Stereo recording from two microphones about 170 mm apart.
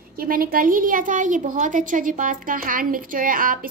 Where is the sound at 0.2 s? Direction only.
55° right (ahead or behind).